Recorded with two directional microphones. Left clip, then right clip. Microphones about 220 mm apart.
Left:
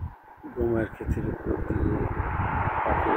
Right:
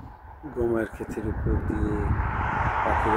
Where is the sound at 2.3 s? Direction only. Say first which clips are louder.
Right 3 dB; 20° right (ahead or behind).